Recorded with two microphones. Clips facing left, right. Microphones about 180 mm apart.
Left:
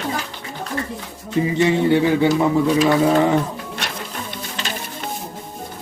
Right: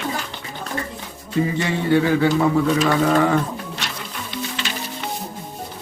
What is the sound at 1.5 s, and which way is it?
Speech, 20° left (ahead or behind).